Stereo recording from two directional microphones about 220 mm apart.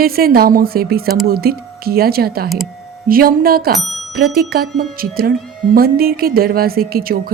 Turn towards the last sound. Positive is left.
turn(degrees=-45)  # may be behind; listen again after turning